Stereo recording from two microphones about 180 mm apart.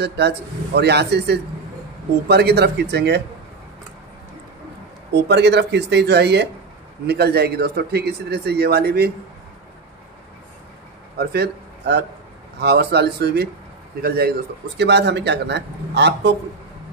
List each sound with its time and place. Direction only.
0.0 s a man's voice: 65° right (ahead or behind)
5.1 s a man's voice: 70° right (ahead or behind)
11.1 s a man's voice: 65° right (ahead or behind)